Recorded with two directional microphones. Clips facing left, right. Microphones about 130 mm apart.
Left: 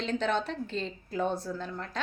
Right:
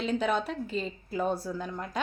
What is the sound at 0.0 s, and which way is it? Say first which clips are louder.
A woman's voice: right 1 dB; 10° right (ahead or behind).